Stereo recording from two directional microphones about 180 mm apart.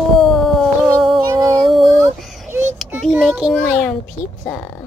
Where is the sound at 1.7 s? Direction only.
Centre (ahead or behind).